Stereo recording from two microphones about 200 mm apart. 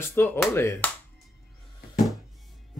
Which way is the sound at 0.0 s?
10° left (ahead or behind).